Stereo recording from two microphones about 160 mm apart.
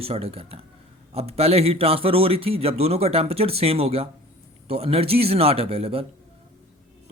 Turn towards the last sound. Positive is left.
turn(degrees=-35)  # may be behind; listen again after turning